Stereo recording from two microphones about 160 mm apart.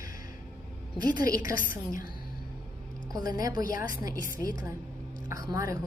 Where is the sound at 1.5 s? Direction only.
60° left (ahead or behind).